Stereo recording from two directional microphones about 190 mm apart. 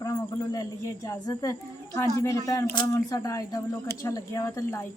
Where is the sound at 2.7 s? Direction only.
20° left (ahead or behind).